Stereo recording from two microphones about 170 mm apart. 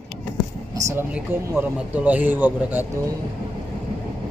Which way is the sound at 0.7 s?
20° right (ahead or behind).